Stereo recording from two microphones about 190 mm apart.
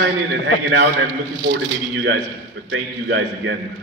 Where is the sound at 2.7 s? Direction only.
75° right (ahead or behind).